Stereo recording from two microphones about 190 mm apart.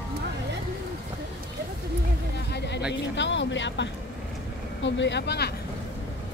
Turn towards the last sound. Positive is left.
turn(degrees=60)  # may be behind; listen again after turning